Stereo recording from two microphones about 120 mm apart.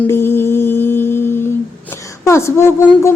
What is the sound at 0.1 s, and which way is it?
Music, 20° left (ahead or behind).